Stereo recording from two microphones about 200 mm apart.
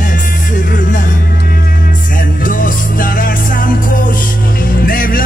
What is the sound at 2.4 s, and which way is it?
Music, 45° left (ahead or behind).